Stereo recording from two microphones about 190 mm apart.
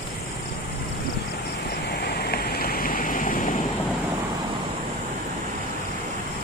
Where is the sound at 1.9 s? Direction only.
55° left (ahead or behind).